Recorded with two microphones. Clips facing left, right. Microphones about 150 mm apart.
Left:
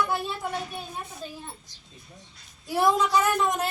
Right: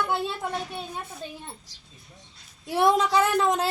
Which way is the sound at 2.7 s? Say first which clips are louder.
Right 1 dB; 25° right (ahead or behind).